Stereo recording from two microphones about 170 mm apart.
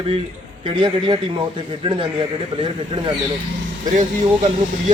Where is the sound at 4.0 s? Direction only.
45° right (ahead or behind).